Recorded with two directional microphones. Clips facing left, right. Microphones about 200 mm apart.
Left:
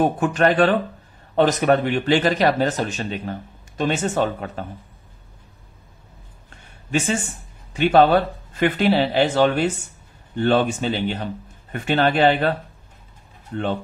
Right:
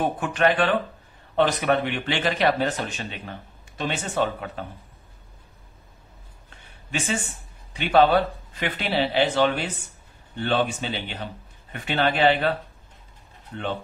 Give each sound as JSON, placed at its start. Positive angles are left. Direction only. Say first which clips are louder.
{"t": 0.0, "sound": "speech", "louder": "left 4 dB", "side_deg": 40}
{"t": 7.7, "sound": "speech", "louder": "left 3 dB", "side_deg": 45}